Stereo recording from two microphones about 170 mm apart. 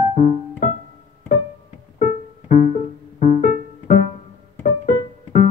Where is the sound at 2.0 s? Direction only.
50° left (ahead or behind).